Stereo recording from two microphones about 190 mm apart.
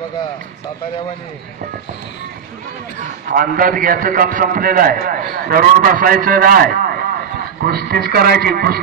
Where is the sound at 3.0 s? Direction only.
45° right (ahead or behind).